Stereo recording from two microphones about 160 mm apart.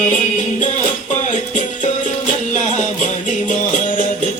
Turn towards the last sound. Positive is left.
turn(degrees=50)  # may be behind; listen again after turning